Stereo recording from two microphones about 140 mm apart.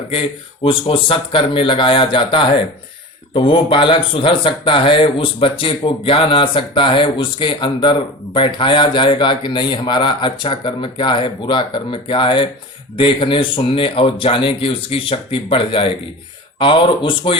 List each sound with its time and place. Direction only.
0.1 s speech: 40° left (ahead or behind)